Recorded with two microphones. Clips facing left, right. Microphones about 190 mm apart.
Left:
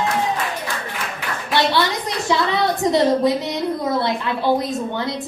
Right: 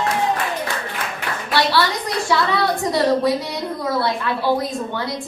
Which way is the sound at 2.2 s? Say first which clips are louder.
Left 1 dB; 20° left (ahead or behind).